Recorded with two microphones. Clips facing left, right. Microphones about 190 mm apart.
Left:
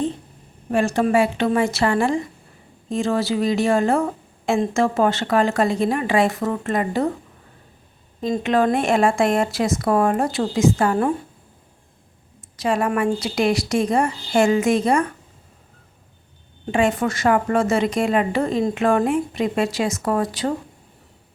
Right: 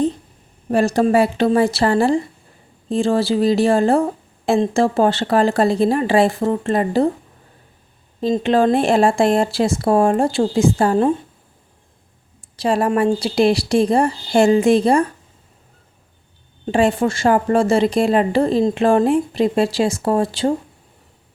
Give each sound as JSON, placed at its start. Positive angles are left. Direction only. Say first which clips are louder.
{"t": 0.7, "sound": "a woman's voice", "louder": "right 3 dB", "side_deg": -35}
{"t": 8.2, "sound": "a woman's voice", "louder": "right 3 dB", "side_deg": -30}
{"t": 12.4, "sound": "a woman's voice", "louder": "right 3 dB", "side_deg": -30}
{"t": 16.7, "sound": "a woman's voice", "louder": "right 3 dB", "side_deg": -30}